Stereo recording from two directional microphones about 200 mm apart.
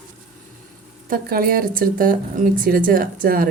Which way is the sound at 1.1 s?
45° right (ahead or behind).